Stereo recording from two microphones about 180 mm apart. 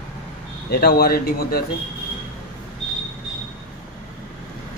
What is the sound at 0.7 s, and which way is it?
Speech, 60° left (ahead or behind).